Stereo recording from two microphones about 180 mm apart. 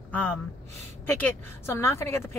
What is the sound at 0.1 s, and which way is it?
A woman's voice, 10° left (ahead or behind).